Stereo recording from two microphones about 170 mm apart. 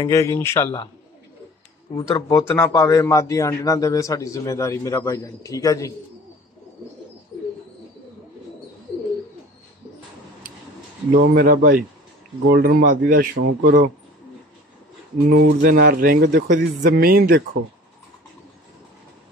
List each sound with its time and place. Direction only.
0.0 s speech: 20° left (ahead or behind)
2.0 s speech: 25° left (ahead or behind)
11.1 s speech: 60° right (ahead or behind)
15.2 s speech: 90° right
15.6 s speech: 60° right (ahead or behind)